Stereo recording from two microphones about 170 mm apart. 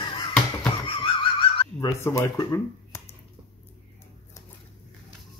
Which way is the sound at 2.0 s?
20° left (ahead or behind).